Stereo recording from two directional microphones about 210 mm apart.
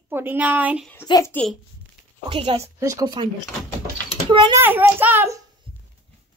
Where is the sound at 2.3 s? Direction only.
25° right (ahead or behind).